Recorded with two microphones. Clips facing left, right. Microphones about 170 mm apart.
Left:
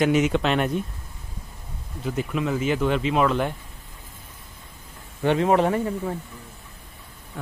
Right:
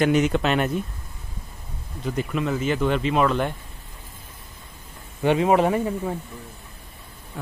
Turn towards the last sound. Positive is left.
turn(degrees=-10)  # may be behind; listen again after turning